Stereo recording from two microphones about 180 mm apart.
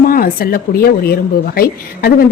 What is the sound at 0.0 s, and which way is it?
A woman's voice, 55° left (ahead or behind).